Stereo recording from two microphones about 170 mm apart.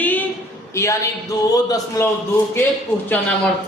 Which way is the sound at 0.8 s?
15° left (ahead or behind).